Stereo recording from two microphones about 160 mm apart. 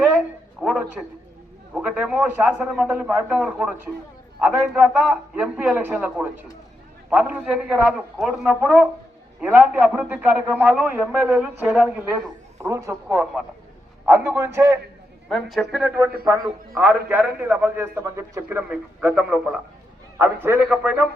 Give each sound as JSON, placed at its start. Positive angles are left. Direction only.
{"t": 0.6, "sound": "a man's voice", "side_deg": 0}
{"t": 9.4, "sound": "a man's voice", "side_deg": -10}
{"t": 12.6, "sound": "a man's voice", "side_deg": -20}
{"t": 15.3, "sound": "a man's voice", "side_deg": 0}